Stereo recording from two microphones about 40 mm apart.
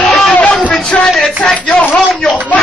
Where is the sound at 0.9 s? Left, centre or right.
Left.